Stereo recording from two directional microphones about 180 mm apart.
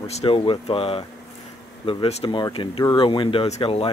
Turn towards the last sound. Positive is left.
turn(degrees=30)  # may be behind; listen again after turning